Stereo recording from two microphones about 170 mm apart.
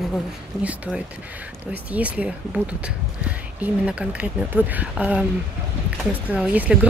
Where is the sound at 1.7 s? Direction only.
10° right (ahead or behind).